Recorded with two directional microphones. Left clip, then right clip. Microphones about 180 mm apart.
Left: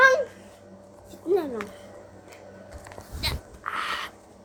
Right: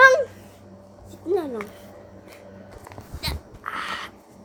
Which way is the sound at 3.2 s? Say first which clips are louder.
Left 1 dB; 5° right (ahead or behind).